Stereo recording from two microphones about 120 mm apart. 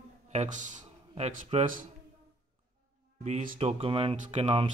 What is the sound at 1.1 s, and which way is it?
Speech, 70° right (ahead or behind).